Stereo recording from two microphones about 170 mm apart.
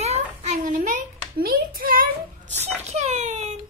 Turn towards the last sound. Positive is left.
turn(degrees=-45)  # may be behind; listen again after turning